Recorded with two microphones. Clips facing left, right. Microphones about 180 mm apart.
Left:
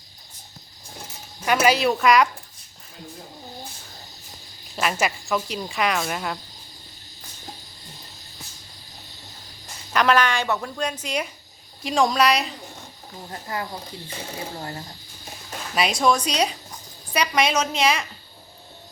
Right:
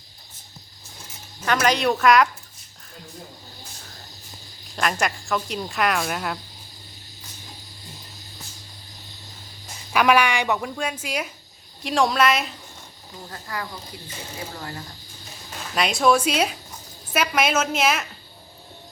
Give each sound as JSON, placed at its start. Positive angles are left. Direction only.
{"t": 1.5, "sound": "speech", "side_deg": 10}
{"t": 4.7, "sound": "speech", "side_deg": 5}
{"t": 9.9, "sound": "a woman's voice", "side_deg": -10}
{"t": 13.3, "sound": "speech", "side_deg": 25}
{"t": 15.7, "sound": "speech", "side_deg": 0}